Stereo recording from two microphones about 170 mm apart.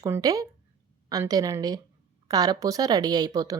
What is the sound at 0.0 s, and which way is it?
A woman's voice, 20° right (ahead or behind).